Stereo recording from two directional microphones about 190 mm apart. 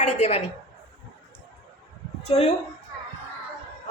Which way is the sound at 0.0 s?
35° left (ahead or behind).